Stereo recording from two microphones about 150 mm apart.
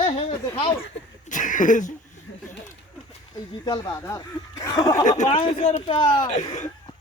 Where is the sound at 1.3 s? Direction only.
60° left (ahead or behind).